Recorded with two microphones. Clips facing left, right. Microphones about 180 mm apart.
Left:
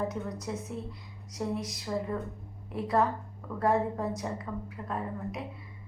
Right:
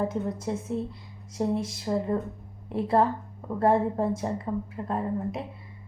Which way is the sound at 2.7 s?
25° right (ahead or behind).